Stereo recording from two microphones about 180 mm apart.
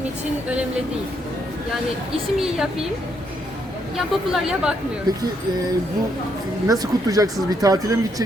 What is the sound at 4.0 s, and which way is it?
Speech, 5° right (ahead or behind).